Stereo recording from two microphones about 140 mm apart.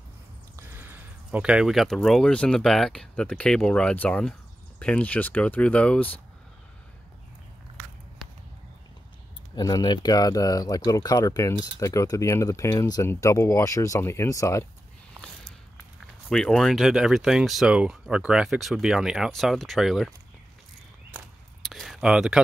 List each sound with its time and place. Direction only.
0.6 s speech: 15° right (ahead or behind); by 6.2 s 10° left (ahead or behind)
9.6 s speech: 30° left (ahead or behind)
16.3 s speech: 5° left (ahead or behind)
21.6 s a sound: centre (ahead or behind)